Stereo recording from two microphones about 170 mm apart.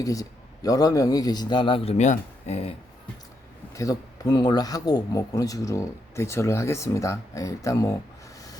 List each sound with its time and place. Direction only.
0.0 s speech: 20° left (ahead or behind); by 2.7 s 35° left (ahead or behind)
3.8 s speech: 20° left (ahead or behind)